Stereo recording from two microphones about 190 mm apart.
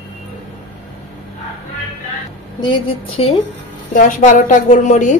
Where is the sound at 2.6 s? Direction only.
30° left (ahead or behind).